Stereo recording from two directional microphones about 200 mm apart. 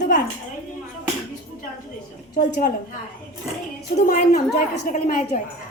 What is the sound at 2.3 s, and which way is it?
Speech, 45° left (ahead or behind).